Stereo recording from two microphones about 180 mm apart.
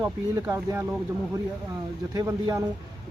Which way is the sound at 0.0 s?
15° right (ahead or behind).